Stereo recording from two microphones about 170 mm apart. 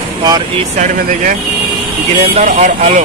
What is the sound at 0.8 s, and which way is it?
Speech, 50° right (ahead or behind).